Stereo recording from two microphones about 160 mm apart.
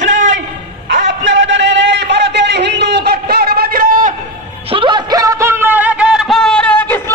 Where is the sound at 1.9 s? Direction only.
90° right; by 4.1 s 60° right (ahead or behind).